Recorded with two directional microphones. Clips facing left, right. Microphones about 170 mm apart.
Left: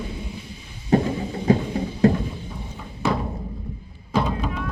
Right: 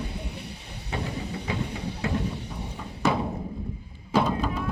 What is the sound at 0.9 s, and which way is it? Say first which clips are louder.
Music: left 11 dB; 45° left (ahead or behind).